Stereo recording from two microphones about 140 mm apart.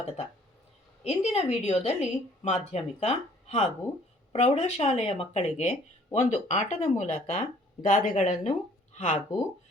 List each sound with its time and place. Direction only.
1.0 s a woman's voice: 50° left (ahead or behind)